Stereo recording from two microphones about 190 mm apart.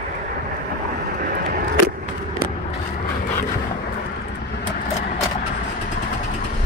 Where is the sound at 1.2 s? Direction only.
50° right (ahead or behind).